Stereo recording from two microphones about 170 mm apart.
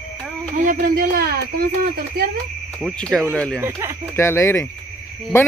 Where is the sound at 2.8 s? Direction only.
5° left (ahead or behind).